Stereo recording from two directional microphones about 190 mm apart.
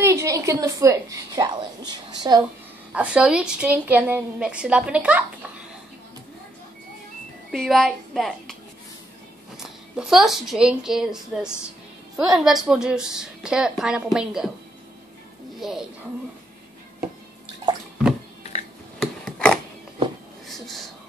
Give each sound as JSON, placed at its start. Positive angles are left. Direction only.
{"t": 0.0, "sound": "a woman's voice", "side_deg": -15}
{"t": 2.9, "sound": "a woman's voice", "side_deg": -5}
{"t": 7.5, "sound": "a woman's voice", "side_deg": 0}
{"t": 9.6, "sound": "a woman's voice", "side_deg": -5}
{"t": 15.6, "sound": "a woman's voice", "side_deg": -5}
{"t": 18.4, "sound": "music", "side_deg": 35}
{"t": 18.9, "sound": "a sound", "side_deg": 5}